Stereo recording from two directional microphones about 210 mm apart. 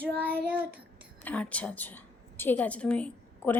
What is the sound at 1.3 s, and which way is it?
A woman's voice, 5° left (ahead or behind).